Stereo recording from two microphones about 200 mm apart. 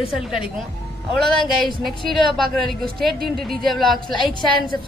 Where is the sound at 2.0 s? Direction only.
Centre (ahead or behind).